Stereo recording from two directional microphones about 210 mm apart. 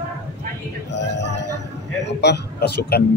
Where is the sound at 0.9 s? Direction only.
55° left (ahead or behind).